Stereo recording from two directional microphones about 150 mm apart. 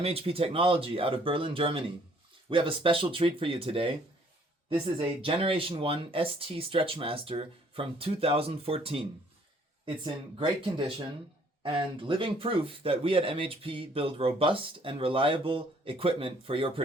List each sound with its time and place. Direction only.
0.0 s speech: 40° right (ahead or behind)